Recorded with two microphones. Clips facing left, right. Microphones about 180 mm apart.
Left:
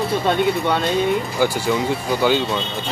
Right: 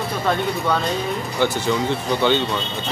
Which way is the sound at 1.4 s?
10° left (ahead or behind).